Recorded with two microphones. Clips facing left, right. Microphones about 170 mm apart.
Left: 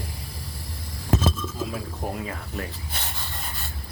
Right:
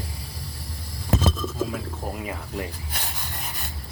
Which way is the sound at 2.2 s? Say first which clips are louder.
Right 2 dB; 15° right (ahead or behind).